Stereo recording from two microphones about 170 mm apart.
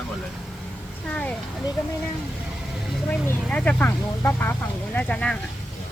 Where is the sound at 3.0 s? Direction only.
10° left (ahead or behind).